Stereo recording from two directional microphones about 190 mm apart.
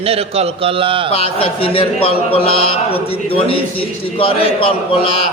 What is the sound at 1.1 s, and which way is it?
A man's voice, 30° left (ahead or behind).